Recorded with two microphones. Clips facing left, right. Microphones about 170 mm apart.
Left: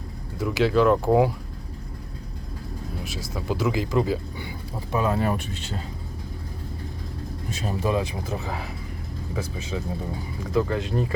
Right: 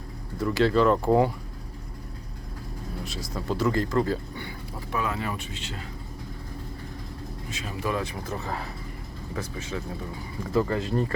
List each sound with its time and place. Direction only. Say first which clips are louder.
0.3 s speech: left 1 dB; 5° left (ahead or behind)
3.0 s speech: right 1 dB; 5° left (ahead or behind)
4.9 s speech: left 5 dB; 30° left (ahead or behind)
5.1 s speech: left 7 dB; 45° left (ahead or behind)
7.5 s speech: left 8 dB; 40° left (ahead or behind)
7.8 s speech: left 3 dB; 20° left (ahead or behind)
10.5 s speech: left 1 dB; centre (ahead or behind)